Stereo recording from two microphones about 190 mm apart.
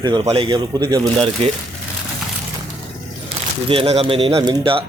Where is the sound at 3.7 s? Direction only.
30° right (ahead or behind).